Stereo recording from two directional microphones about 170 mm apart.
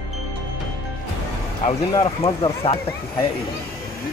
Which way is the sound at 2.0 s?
35° left (ahead or behind).